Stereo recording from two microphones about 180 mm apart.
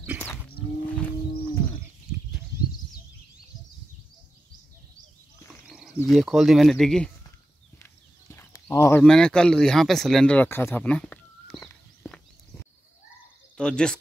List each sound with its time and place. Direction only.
0.9 s wild animals: 10° left (ahead or behind)
6.0 s speech: centre (ahead or behind)
7.8 s a sound: 15° left (ahead or behind)
9.0 s speech: 5° left (ahead or behind)
13.6 s speech: 5° left (ahead or behind)